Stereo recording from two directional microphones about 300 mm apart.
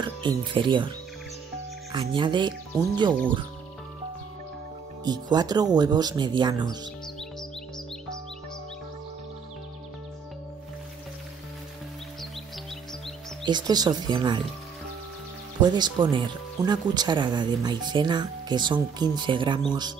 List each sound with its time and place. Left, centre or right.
0.0 s speech: centre
5.0 s speech: centre
13.4 s speech: centre
15.6 s speech: centre